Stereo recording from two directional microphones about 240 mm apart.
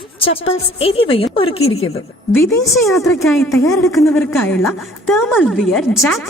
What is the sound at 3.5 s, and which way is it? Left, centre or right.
A woman's voice, centre.